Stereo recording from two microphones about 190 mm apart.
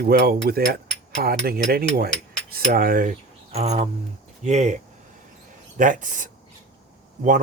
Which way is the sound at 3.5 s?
35° right (ahead or behind).